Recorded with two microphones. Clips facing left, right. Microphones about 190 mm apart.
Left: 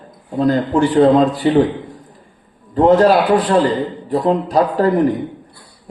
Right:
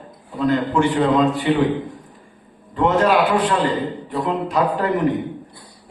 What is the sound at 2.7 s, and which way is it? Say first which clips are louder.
A man's voice: left 6 dB; 35° left (ahead or behind).